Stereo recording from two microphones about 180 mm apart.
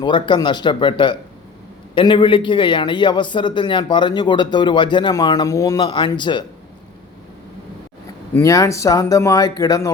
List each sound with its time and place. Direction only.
0.0 s a man's voice: 25° left (ahead or behind)
8.3 s a man's voice: 15° left (ahead or behind)